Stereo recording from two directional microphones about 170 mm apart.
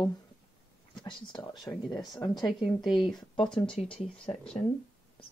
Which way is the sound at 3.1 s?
25° left (ahead or behind).